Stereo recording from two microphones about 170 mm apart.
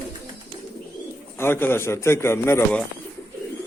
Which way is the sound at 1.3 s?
15° left (ahead or behind).